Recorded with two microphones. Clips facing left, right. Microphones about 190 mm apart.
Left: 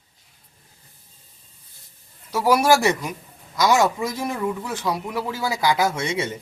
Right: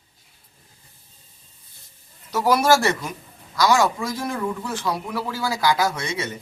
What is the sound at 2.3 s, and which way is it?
Speech, 10° left (ahead or behind).